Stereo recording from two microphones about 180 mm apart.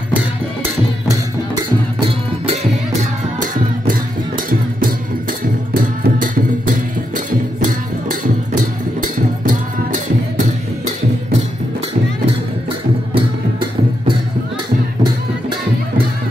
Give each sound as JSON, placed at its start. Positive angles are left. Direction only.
{"t": 2.0, "sound": "music", "side_deg": -35}
{"t": 4.5, "sound": "music", "side_deg": -50}
{"t": 9.0, "sound": "music", "side_deg": -45}